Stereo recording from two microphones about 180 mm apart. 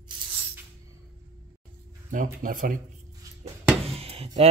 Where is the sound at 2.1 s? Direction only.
50° right (ahead or behind).